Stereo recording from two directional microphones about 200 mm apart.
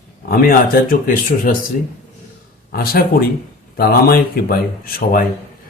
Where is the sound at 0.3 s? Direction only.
45° left (ahead or behind).